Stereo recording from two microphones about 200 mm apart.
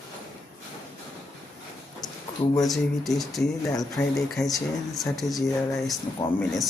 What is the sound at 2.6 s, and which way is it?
Speech, centre (ahead or behind).